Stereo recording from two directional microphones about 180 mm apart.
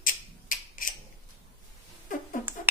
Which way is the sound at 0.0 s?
50° left (ahead or behind).